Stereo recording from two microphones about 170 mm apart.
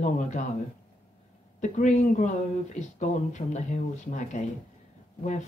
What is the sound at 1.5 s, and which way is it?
Speech, 45° left (ahead or behind).